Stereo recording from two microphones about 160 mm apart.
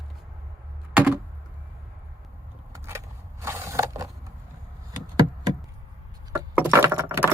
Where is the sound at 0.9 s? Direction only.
5° right (ahead or behind).